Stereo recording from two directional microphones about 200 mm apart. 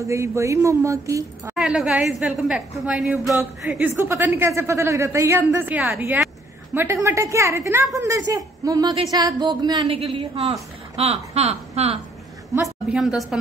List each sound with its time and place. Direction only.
0.0 s a woman's voice: 15° right (ahead or behind)
1.5 s a woman's voice: centre (ahead or behind)
3.9 s a woman's voice: 15° right (ahead or behind); by 12.0 s 30° right (ahead or behind)
12.6 s a woman's voice: centre (ahead or behind)